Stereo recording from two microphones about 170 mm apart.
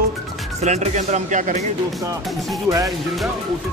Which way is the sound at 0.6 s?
40° right (ahead or behind).